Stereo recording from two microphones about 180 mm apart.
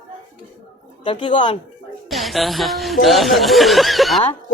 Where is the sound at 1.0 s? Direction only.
30° left (ahead or behind).